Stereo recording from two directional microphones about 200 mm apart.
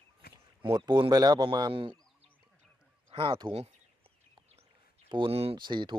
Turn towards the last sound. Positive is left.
turn(degrees=-20)  # may be behind; listen again after turning